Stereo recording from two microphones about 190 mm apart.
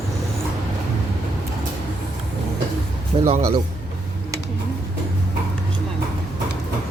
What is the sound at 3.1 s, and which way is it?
Music, 30° right (ahead or behind).